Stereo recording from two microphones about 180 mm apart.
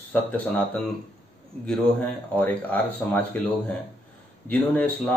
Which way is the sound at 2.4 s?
10° left (ahead or behind).